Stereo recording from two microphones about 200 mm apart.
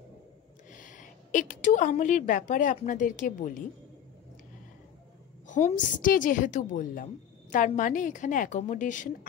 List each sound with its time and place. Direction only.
0.7 s a woman's voice: 40° left (ahead or behind)
5.5 s a woman's voice: 35° left (ahead or behind)